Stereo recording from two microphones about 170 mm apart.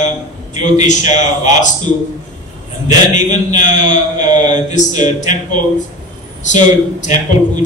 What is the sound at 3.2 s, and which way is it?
A man's voice, 45° left (ahead or behind).